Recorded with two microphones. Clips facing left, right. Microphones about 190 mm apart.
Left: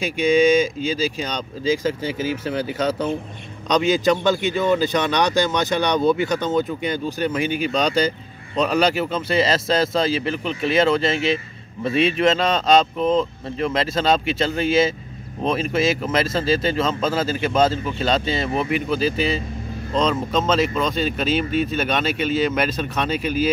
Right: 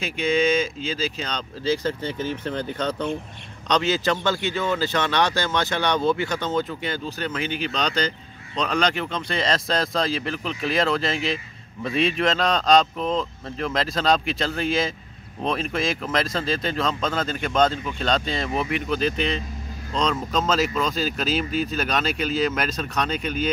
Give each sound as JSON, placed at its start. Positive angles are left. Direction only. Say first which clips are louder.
{"t": 0.0, "sound": "a man's voice", "louder": "left 5 dB", "side_deg": 15}